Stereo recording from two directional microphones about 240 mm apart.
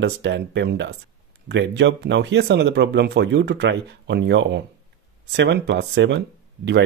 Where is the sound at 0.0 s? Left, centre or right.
Right.